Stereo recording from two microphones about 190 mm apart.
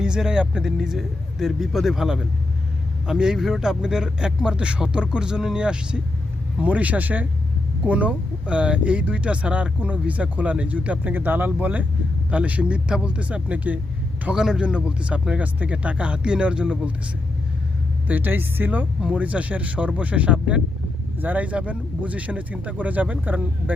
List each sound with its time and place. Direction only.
0.0 s speech: 5° right (ahead or behind)
18.1 s speech: 10° right (ahead or behind)